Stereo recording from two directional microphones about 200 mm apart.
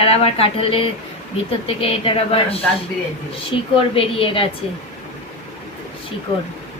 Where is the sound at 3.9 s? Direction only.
25° left (ahead or behind).